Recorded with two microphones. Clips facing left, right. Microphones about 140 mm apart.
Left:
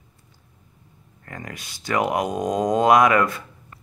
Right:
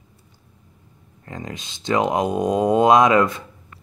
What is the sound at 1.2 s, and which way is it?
Speech, 20° right (ahead or behind).